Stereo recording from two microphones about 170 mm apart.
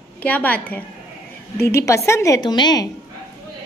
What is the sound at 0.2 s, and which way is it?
A woman's voice, 10° left (ahead or behind).